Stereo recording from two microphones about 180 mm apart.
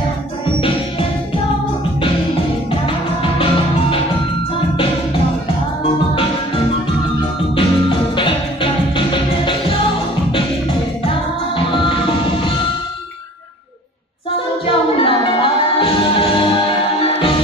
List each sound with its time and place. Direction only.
7.5 s music: 30° left (ahead or behind)
11.1 s music: 30° left (ahead or behind)
14.7 s music: 30° left (ahead or behind)